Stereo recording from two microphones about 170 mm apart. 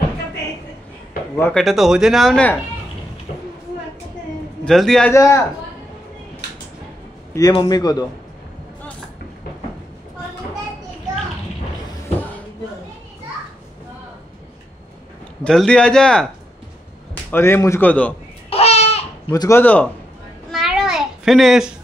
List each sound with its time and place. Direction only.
1.3 s speech: 10° left (ahead or behind)
1.6 s speech: centre (ahead or behind)
4.6 s speech: 5° left (ahead or behind)
5.1 s a man's voice: 15° left (ahead or behind)
7.3 s a man's voice: 25° left (ahead or behind)
15.4 s a man's voice: 5° left (ahead or behind)
18.5 s a sound: 40° left (ahead or behind)
19.3 s a man's voice: 20° left (ahead or behind)
19.6 s a man's voice: 10° left (ahead or behind)
20.5 s a sound: centre (ahead or behind)